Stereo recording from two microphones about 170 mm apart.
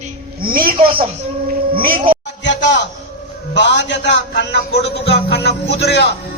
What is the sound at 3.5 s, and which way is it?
Speech, 90° left.